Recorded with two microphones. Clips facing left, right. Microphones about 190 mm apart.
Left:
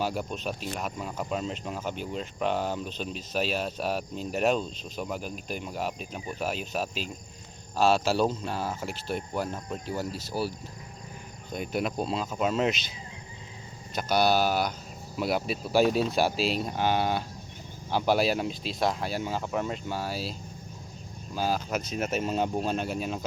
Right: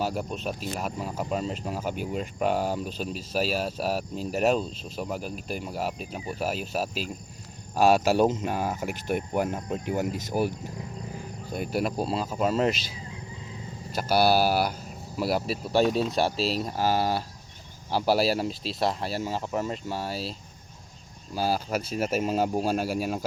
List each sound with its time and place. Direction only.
0.0 s speech: centre (ahead or behind); by 10.5 s 15° right (ahead or behind)
11.5 s speech: 5° right (ahead or behind)
13.9 s speech: 5° right (ahead or behind)
21.3 s speech: 5° right (ahead or behind)